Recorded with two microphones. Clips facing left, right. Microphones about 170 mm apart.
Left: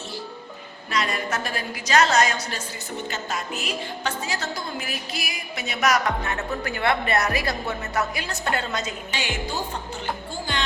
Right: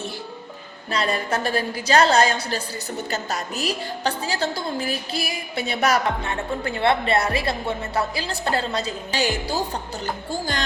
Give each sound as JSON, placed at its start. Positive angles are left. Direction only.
{"t": 0.9, "sound": "a woman's voice", "side_deg": -30}